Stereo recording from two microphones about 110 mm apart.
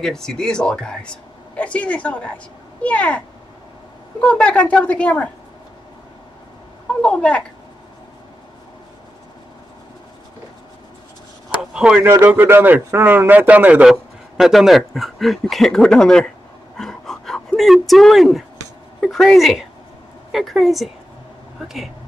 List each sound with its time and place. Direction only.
0.0 s speech: 5° left (ahead or behind)
4.2 s speech: 10° left (ahead or behind)
7.0 s speech: 10° left (ahead or behind)
11.7 s speech: 10° right (ahead or behind)
12.0 s a man's voice: 25° right (ahead or behind); by 16.3 s 5° left (ahead or behind)
16.7 s a sound: 5° left (ahead or behind)
18.9 s a man's voice: 5° left (ahead or behind)